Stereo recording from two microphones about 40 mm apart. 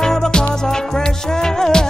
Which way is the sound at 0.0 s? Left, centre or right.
Centre.